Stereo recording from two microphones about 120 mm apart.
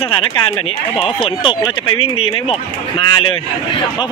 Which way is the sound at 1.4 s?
45° left (ahead or behind).